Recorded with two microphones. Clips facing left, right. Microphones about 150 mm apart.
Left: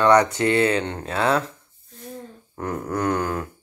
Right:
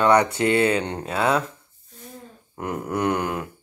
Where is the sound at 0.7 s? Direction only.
15° right (ahead or behind).